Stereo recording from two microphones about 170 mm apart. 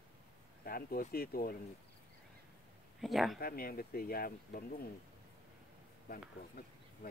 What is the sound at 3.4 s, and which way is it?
Speech, 60° left (ahead or behind).